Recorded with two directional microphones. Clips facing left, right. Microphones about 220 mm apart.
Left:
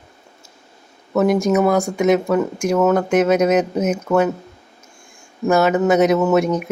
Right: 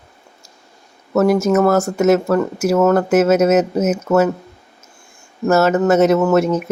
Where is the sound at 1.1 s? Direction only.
Centre (ahead or behind).